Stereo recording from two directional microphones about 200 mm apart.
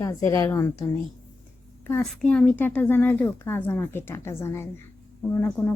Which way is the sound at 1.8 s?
5° left (ahead or behind).